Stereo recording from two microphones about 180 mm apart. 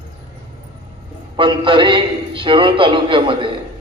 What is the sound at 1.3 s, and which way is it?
A man's voice, 30° right (ahead or behind).